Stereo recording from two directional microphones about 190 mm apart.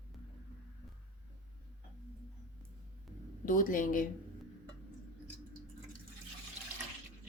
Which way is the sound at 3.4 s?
45° left (ahead or behind).